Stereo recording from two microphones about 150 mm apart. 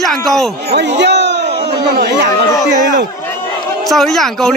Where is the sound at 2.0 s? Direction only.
90° right.